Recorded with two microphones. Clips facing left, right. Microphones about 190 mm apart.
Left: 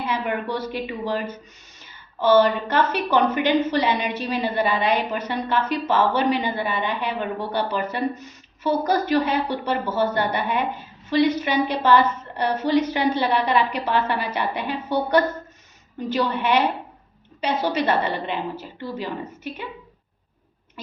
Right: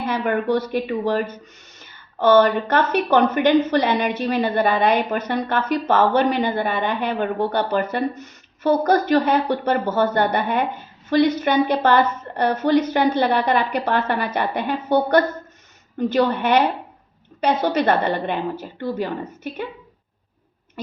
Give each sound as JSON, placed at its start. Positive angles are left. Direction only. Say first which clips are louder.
{"t": 0.1, "sound": "a woman's voice", "louder": "right 7 dB", "side_deg": -55}